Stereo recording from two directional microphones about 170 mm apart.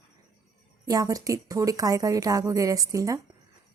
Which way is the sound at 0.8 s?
20° right (ahead or behind).